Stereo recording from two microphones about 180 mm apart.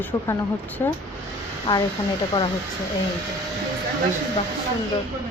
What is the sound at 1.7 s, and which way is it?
Speech, 25° left (ahead or behind).